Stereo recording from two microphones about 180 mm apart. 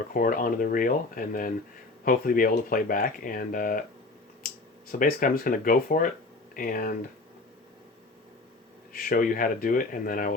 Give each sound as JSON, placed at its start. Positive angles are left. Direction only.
{"t": 0.1, "sound": "speech", "side_deg": 50}
{"t": 8.9, "sound": "speech", "side_deg": 50}